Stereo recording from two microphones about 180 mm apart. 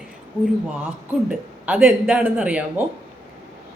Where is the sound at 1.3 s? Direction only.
5° right (ahead or behind).